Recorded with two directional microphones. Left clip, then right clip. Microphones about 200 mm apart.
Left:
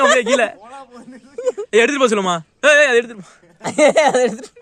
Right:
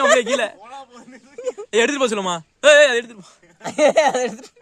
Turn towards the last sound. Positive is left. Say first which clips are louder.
# left 3 dB
turn(degrees=40)  # may be behind; listen again after turning